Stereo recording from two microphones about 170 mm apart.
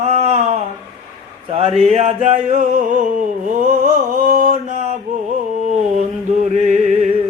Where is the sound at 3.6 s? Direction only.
50° right (ahead or behind).